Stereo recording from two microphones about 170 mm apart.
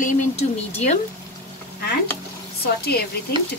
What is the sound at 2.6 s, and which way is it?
Speech, 70° left (ahead or behind).